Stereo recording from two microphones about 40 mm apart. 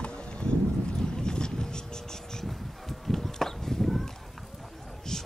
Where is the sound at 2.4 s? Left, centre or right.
Centre.